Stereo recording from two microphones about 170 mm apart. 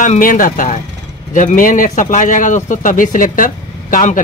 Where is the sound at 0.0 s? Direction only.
50° left (ahead or behind).